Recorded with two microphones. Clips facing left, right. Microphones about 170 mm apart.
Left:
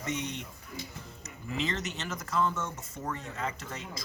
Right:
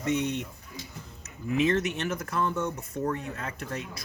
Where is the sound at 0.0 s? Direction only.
60° right (ahead or behind).